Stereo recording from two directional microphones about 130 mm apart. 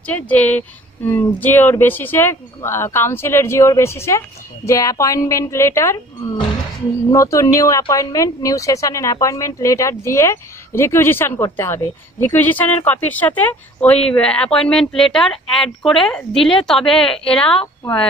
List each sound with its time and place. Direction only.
0.0 s a woman's voice: 10° left (ahead or behind)
7.1 s a woman's voice: 25° left (ahead or behind); by 17.6 s 5° left (ahead or behind)